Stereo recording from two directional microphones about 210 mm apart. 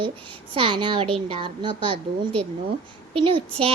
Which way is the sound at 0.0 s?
25° right (ahead or behind).